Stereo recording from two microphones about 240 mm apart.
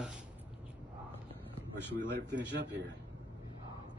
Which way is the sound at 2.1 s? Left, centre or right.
Right.